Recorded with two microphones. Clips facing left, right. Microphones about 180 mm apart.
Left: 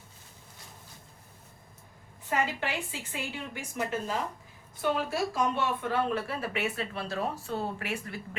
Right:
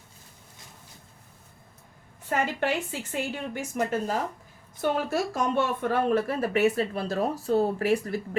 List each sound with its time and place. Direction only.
2.3 s a woman's voice: 50° right (ahead or behind)